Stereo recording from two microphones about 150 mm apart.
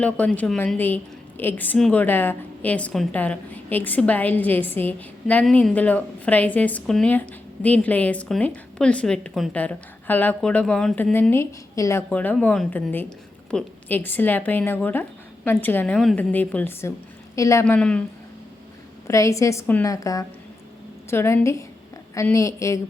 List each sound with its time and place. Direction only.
0.0 s a woman's voice: 10° left (ahead or behind)
12.0 s a woman's voice: 10° left (ahead or behind)
16.0 s a woman's voice: centre (ahead or behind); by 17.7 s 20° left (ahead or behind)
17.7 s a woman's voice: 5° left (ahead or behind)
19.0 s a woman's voice: 20° left (ahead or behind)